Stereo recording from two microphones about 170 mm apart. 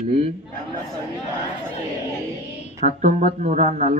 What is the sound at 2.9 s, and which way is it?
Speech, 45° right (ahead or behind).